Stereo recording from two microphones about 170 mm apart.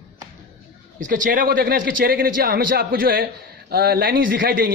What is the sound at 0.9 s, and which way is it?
A man's voice, 50° right (ahead or behind).